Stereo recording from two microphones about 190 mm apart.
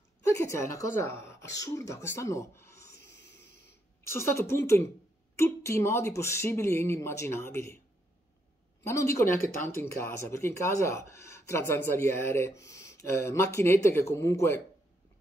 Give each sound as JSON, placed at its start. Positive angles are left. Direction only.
{"t": 0.2, "sound": "speech", "side_deg": 15}
{"t": 3.1, "sound": "a sound", "side_deg": 60}
{"t": 4.1, "sound": "speech", "side_deg": 15}
{"t": 8.8, "sound": "speech", "side_deg": 15}